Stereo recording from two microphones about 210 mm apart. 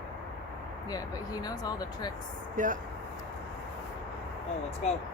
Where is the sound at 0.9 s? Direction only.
20° left (ahead or behind).